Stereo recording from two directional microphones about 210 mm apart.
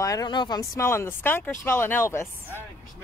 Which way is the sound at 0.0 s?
20° left (ahead or behind).